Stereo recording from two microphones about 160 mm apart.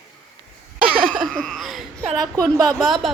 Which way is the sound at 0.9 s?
60° right (ahead or behind).